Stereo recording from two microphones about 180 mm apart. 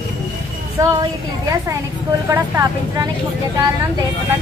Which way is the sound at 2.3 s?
15° right (ahead or behind).